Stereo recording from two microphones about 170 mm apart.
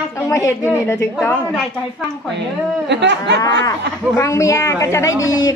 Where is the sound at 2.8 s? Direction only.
90° right.